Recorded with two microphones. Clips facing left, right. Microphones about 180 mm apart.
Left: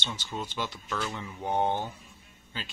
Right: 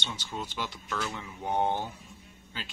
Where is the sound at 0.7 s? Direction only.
5° left (ahead or behind).